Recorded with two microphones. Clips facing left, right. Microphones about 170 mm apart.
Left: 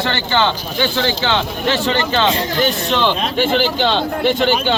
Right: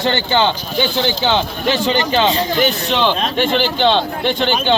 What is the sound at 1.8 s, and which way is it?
Speech, 15° right (ahead or behind).